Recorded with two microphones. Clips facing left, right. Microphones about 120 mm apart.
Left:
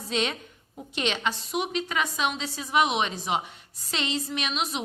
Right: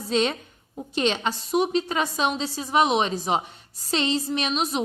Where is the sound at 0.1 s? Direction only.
35° right (ahead or behind).